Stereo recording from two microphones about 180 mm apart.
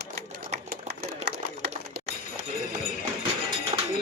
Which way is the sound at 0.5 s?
60° right (ahead or behind).